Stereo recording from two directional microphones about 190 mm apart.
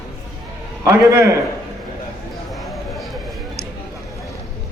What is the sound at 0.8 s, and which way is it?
Speech, 15° right (ahead or behind).